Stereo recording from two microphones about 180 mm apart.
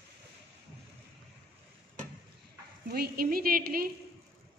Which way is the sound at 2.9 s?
55° right (ahead or behind).